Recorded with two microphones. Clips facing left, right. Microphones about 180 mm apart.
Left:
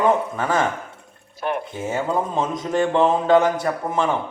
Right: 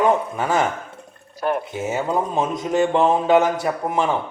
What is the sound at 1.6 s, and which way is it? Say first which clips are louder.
Speech: right 1 dB; 10° right (ahead or behind).